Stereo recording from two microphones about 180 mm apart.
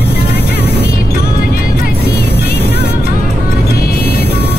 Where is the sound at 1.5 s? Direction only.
60° left (ahead or behind).